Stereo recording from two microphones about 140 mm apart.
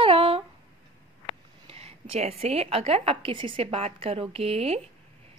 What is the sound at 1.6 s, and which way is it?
A woman's voice, 45° right (ahead or behind).